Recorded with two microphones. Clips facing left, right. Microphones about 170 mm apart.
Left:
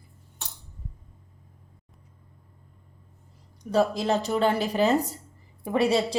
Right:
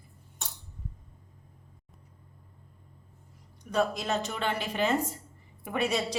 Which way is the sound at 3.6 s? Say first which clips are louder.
Left 5 dB; 35° left (ahead or behind).